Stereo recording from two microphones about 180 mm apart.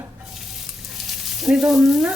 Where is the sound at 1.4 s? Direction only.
5° right (ahead or behind).